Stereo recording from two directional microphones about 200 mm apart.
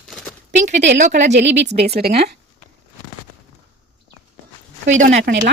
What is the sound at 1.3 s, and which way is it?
Speech, 60° right (ahead or behind).